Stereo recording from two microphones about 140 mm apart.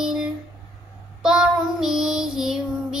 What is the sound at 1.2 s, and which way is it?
Child singing, 5° right (ahead or behind).